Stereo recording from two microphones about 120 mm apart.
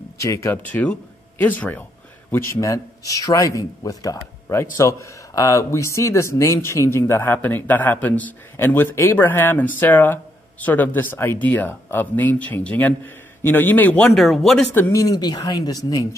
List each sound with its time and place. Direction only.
0.2 s speech: 25° left (ahead or behind)
0.6 s speech: 15° left (ahead or behind)
14.7 s speech: 25° left (ahead or behind)